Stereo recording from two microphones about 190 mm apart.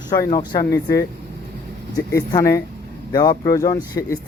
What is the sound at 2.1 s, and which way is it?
Speech, 15° left (ahead or behind).